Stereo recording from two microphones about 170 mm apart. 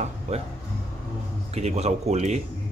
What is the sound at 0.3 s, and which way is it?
Speech, 40° right (ahead or behind).